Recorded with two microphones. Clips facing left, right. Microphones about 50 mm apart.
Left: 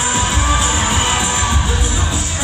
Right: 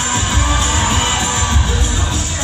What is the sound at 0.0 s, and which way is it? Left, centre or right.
Music, centre.